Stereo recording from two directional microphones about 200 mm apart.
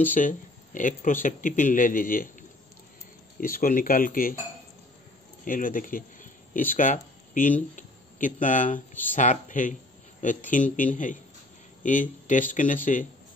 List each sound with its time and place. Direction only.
0.1 s speech: 40° left (ahead or behind)
3.3 s speech: 45° left (ahead or behind)
5.4 s speech: 45° left (ahead or behind)
10.8 s speech: 40° left (ahead or behind)